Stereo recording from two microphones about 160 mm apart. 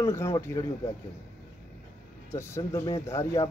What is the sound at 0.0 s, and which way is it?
Speech, 20° left (ahead or behind).